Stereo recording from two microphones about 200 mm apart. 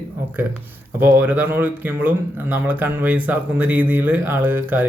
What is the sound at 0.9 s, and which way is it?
Speech, 10° right (ahead or behind).